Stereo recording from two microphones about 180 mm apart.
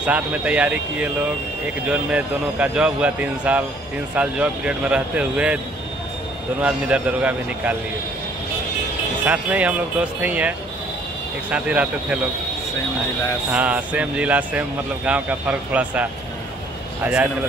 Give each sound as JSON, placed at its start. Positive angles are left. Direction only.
{"t": 0.0, "sound": "speech", "side_deg": -5}
{"t": 6.6, "sound": "speech", "side_deg": -5}
{"t": 9.2, "sound": "speech", "side_deg": -10}
{"t": 11.5, "sound": "speech", "side_deg": -5}
{"t": 13.5, "sound": "speech", "side_deg": -10}